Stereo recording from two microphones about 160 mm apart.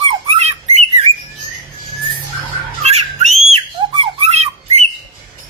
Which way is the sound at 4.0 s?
40° right (ahead or behind).